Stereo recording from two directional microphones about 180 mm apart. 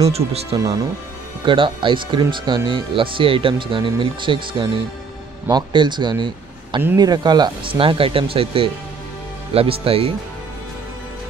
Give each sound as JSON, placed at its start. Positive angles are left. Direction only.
{"t": 0.0, "sound": "speech", "side_deg": -35}